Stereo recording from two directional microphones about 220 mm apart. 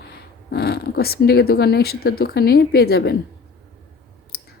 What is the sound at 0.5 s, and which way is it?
A woman's voice, 45° left (ahead or behind).